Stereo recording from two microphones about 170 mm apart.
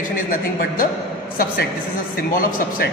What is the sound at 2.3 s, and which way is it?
Speech, 55° left (ahead or behind).